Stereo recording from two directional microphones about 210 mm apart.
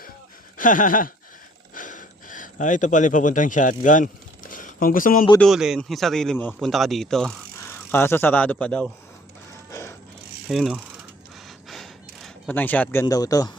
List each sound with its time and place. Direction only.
0.5 s a sound: 40° left (ahead or behind)
5.4 s speech: centre (ahead or behind)
9.6 s music: 15° left (ahead or behind)
10.5 s speech: centre (ahead or behind)
11.4 s gasp: centre (ahead or behind); by 13.5 s 15° left (ahead or behind)